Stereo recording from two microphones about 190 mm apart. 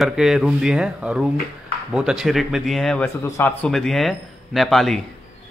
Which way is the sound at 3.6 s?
5° left (ahead or behind).